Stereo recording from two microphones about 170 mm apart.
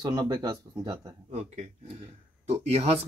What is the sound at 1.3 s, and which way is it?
Speech, 40° right (ahead or behind).